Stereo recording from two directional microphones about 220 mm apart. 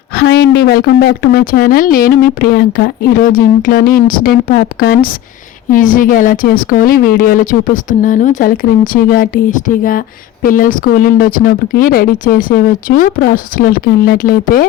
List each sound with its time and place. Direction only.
0.2 s a woman's voice: 45° left (ahead or behind)